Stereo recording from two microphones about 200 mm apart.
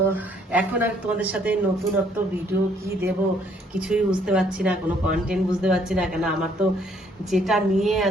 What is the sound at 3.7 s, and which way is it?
Speech, 5° right (ahead or behind).